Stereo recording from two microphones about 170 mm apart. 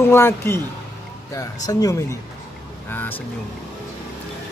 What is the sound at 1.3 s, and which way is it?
Speech, 20° left (ahead or behind).